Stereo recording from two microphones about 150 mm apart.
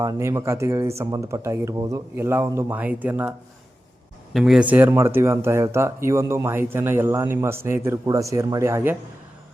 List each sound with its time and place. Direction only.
0.0 s speech: 20° right (ahead or behind)
4.4 s speech: 5° right (ahead or behind)
4.7 s speech: 15° right (ahead or behind)